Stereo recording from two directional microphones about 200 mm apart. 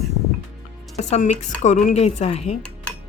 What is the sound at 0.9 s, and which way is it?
Speech, 35° left (ahead or behind).